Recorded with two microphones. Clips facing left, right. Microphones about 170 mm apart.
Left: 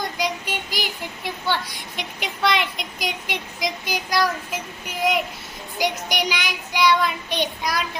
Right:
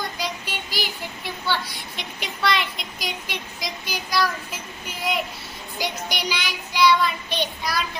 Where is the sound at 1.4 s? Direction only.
15° left (ahead or behind).